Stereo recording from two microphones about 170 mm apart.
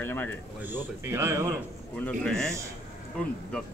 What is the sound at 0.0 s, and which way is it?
Speech, 10° left (ahead or behind).